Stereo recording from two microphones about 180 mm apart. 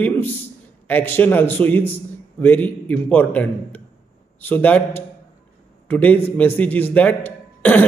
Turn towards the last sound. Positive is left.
turn(degrees=10)  # may be behind; listen again after turning